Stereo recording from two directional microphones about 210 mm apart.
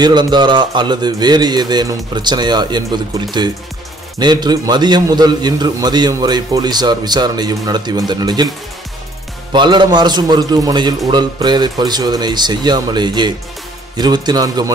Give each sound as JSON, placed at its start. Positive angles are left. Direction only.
{"t": 0.0, "sound": "a man's voice", "side_deg": -20}
{"t": 4.2, "sound": "a man's voice", "side_deg": -20}
{"t": 9.5, "sound": "a man's voice", "side_deg": -20}